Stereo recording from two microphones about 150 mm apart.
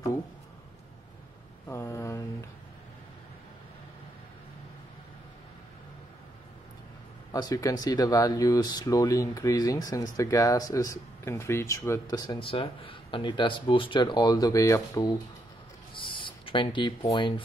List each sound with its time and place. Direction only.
1.7 s mantra: 15° left (ahead or behind)
7.3 s speech: 25° left (ahead or behind)
15.9 s a sound: 35° left (ahead or behind)